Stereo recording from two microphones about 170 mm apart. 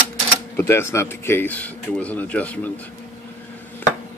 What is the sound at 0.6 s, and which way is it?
Speech, 15° left (ahead or behind).